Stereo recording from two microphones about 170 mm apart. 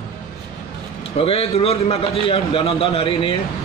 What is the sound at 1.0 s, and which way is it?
A man's voice, 35° left (ahead or behind).